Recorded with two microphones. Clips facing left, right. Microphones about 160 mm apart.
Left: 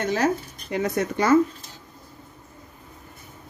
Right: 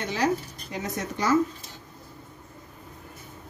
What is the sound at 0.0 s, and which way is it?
Speech, 45° left (ahead or behind).